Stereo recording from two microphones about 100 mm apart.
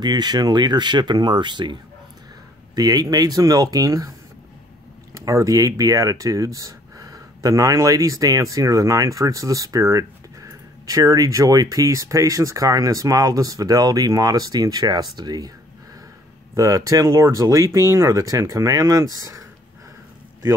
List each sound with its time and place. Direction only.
0.0 s speech: 45° right (ahead or behind)
2.7 s speech: 40° right (ahead or behind)
5.1 s speech: 35° right (ahead or behind)
16.5 s speech: 35° right (ahead or behind)